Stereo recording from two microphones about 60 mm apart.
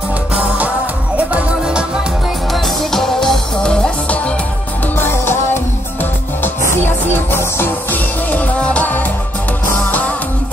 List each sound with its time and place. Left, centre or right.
1.3 s music: centre
2.5 s music: centre
4.9 s music: left
6.6 s music: left
7.9 s music: left